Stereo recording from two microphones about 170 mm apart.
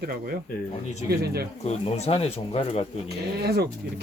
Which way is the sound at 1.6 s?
35° left (ahead or behind).